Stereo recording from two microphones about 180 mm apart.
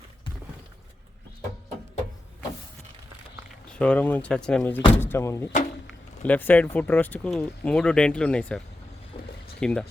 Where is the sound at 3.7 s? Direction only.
5° left (ahead or behind).